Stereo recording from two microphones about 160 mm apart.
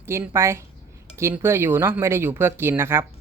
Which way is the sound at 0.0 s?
15° right (ahead or behind).